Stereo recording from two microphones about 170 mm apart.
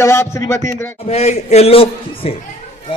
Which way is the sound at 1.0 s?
40° left (ahead or behind).